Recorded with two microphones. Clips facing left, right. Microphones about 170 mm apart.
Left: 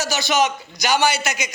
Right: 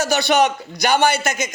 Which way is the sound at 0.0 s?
60° right (ahead or behind).